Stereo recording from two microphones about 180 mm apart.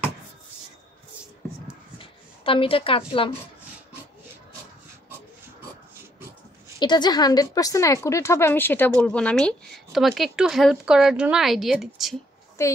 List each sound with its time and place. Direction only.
2.0 s a sound: 30° left (ahead or behind)
6.8 s a woman's voice: 25° left (ahead or behind); by 12.2 s centre (ahead or behind)
12.6 s a woman's voice: 15° left (ahead or behind)